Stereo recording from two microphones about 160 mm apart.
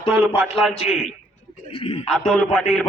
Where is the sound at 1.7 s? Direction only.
35° left (ahead or behind).